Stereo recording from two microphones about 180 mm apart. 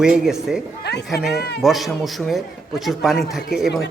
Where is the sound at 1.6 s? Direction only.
Centre (ahead or behind).